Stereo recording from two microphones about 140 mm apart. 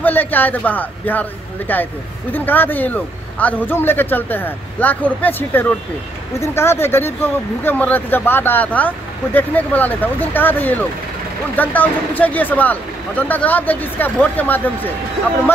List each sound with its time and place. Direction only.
0.0 s a man's voice: 15° left (ahead or behind)